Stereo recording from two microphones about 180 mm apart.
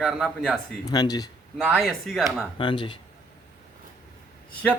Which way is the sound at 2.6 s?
25° left (ahead or behind).